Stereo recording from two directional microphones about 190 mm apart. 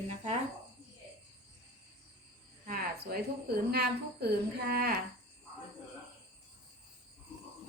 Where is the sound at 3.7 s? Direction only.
55° right (ahead or behind).